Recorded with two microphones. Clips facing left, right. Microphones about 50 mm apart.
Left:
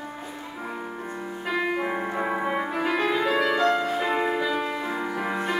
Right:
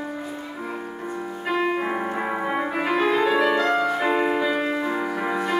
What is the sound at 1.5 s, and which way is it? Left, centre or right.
Music, centre.